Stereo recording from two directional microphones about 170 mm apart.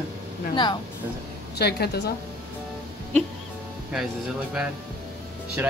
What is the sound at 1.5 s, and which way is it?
Speech, 70° left (ahead or behind).